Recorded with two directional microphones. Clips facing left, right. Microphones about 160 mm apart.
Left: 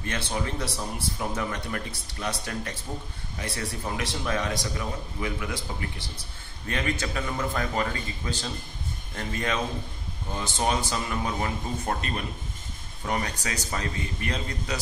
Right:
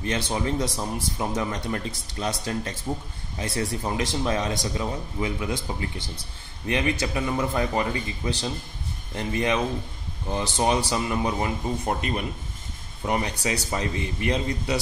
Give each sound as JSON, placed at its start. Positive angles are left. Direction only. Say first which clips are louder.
{"t": 0.0, "sound": "a man's voice", "louder": "right 4 dB", "side_deg": -20}